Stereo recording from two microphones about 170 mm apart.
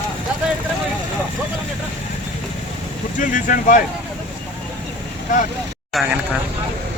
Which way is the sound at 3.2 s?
50° left (ahead or behind).